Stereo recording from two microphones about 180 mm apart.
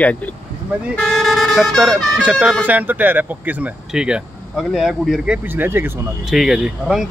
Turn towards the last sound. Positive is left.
turn(degrees=0)  # may be behind; listen again after turning